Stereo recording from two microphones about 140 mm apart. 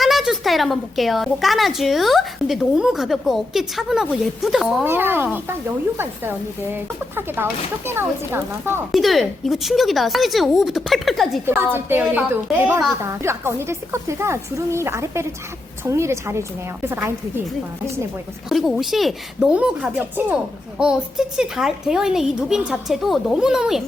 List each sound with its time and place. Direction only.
0.0 s a woman's voice: centre (ahead or behind)
4.9 s a woman's voice: 15° right (ahead or behind)
6.7 s a woman's voice: 15° right (ahead or behind)
8.9 s a woman's voice: centre (ahead or behind)
11.4 s a woman's voice: 15° right (ahead or behind)
18.4 s a woman's voice: centre (ahead or behind)